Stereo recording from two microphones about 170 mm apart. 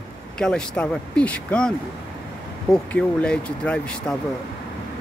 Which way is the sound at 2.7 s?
5° left (ahead or behind).